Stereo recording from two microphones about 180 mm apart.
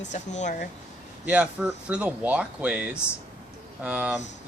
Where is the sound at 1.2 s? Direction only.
5° right (ahead or behind).